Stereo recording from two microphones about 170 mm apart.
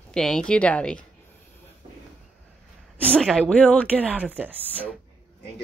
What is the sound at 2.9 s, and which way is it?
Speech, 5° left (ahead or behind).